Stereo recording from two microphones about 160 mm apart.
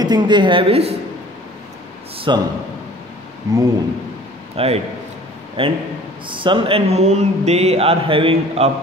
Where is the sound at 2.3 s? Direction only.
30° right (ahead or behind).